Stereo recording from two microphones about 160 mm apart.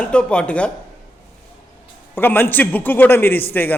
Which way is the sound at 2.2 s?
15° left (ahead or behind).